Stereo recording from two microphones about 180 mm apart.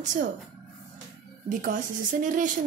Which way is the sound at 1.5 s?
45° right (ahead or behind).